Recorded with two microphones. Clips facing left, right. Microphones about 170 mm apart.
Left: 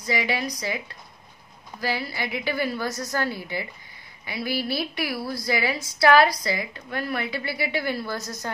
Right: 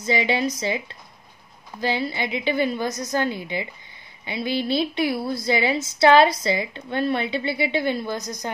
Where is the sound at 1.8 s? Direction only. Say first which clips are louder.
Right 4 dB; 25° right (ahead or behind).